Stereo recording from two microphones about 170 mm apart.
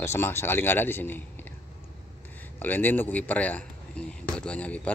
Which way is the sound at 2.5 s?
10° left (ahead or behind).